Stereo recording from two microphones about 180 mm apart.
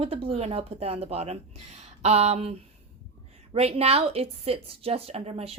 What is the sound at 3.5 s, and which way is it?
Speech, 35° right (ahead or behind).